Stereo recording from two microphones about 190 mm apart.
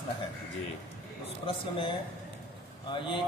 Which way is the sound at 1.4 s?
25° left (ahead or behind).